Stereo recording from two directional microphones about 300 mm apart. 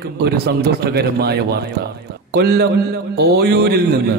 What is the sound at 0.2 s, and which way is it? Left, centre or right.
A man's voice, right.